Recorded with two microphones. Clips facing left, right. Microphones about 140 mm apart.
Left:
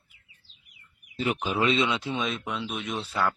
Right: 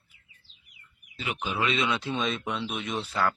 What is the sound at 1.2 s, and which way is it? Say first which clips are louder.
Speech: left 4 dB; 40° left (ahead or behind).